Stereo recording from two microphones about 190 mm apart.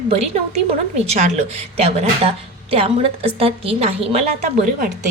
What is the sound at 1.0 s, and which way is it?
A woman's voice, 35° right (ahead or behind).